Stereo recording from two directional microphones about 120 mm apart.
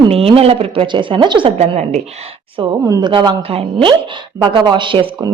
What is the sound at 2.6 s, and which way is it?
Speech, 45° right (ahead or behind).